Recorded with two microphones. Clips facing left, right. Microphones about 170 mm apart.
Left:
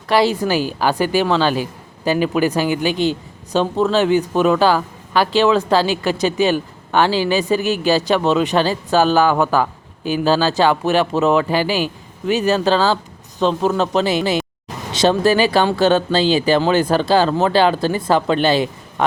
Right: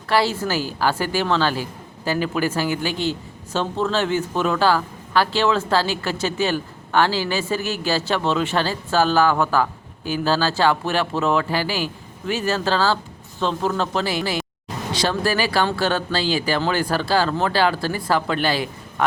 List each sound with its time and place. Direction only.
0.1 s speech: 15° left (ahead or behind)